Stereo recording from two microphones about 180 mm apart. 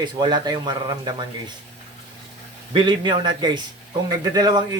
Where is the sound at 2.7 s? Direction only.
25° right (ahead or behind).